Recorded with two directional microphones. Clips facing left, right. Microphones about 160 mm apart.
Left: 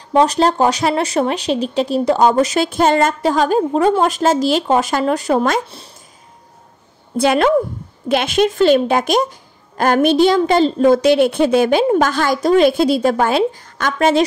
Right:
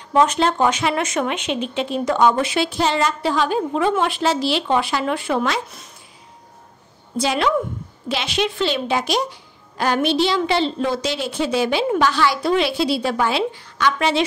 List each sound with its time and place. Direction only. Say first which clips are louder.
0.1 s speech: left 3 dB; 35° left (ahead or behind)
7.2 s a woman's voice: left 6 dB; 55° left (ahead or behind)